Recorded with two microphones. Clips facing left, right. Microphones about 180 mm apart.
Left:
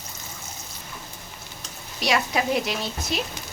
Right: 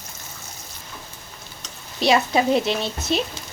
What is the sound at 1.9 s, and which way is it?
A woman's voice, 30° right (ahead or behind).